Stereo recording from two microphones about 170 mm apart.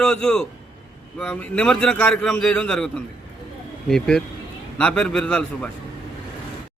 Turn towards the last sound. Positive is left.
turn(degrees=5)  # may be behind; listen again after turning